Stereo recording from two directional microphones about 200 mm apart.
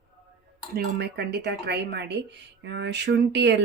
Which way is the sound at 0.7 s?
50° right (ahead or behind).